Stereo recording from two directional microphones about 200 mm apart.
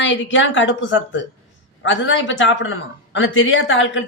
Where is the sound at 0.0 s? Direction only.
65° left (ahead or behind).